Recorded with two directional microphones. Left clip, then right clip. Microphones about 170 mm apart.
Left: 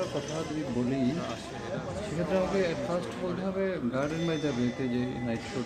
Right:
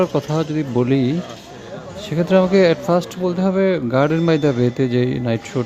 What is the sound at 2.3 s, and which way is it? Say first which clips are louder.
Speech: right 15 dB; 70° right (ahead or behind).